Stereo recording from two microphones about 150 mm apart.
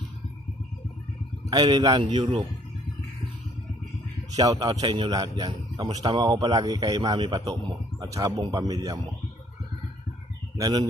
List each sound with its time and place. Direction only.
1.5 s a man's voice: 25° right (ahead or behind)
4.4 s a man's voice: 25° right (ahead or behind)
10.6 s a man's voice: 25° right (ahead or behind)